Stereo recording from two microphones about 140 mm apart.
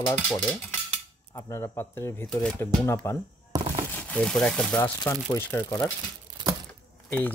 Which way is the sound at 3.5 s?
25° right (ahead or behind).